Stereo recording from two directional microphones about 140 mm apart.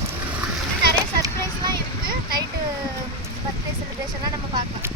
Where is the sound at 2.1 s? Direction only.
90° right.